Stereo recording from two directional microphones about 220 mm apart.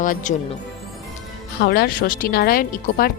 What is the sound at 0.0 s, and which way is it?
Speech, 35° left (ahead or behind).